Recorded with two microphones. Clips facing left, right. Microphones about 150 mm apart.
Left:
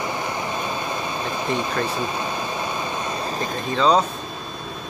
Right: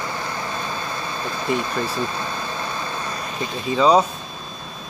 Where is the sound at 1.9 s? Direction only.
15° left (ahead or behind).